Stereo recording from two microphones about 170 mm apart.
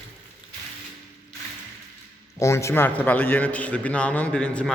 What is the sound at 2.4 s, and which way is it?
A man's voice, 15° left (ahead or behind).